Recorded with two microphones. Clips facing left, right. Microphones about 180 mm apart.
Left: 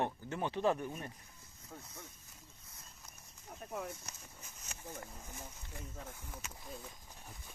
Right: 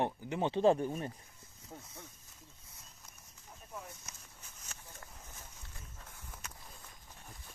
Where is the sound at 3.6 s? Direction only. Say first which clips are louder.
Left 5 dB; 65° left (ahead or behind).